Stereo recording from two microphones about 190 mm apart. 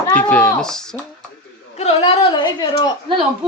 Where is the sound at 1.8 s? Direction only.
30° left (ahead or behind).